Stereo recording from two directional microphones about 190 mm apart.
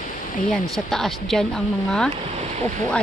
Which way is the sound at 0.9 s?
Centre (ahead or behind).